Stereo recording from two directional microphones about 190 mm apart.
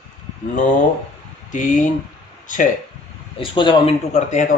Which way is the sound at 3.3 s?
25° left (ahead or behind).